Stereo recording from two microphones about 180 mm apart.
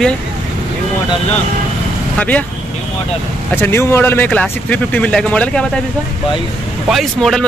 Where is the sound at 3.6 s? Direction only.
15° left (ahead or behind).